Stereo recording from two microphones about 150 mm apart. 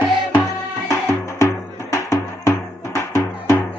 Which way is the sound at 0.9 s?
20° left (ahead or behind).